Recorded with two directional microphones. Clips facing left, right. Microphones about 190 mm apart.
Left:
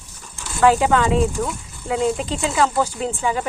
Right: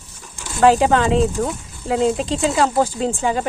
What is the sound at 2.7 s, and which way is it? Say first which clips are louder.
Speech: right 3 dB; 40° right (ahead or behind).